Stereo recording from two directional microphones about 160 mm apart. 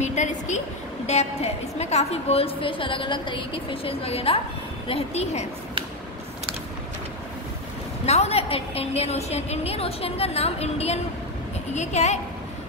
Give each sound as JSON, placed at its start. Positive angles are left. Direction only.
{"t": 0.0, "sound": "a woman's voice", "side_deg": 45}
{"t": 8.0, "sound": "a woman's voice", "side_deg": 40}